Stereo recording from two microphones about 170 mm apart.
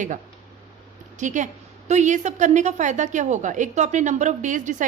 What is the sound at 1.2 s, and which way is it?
A woman's voice, 45° right (ahead or behind).